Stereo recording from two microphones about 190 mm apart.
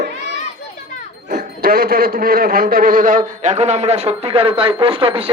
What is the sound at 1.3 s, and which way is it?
A man's voice, 45° right (ahead or behind).